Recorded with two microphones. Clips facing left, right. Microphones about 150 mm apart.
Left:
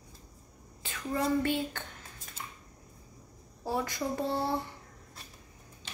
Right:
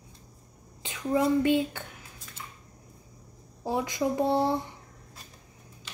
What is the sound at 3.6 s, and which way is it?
Speech, 15° right (ahead or behind).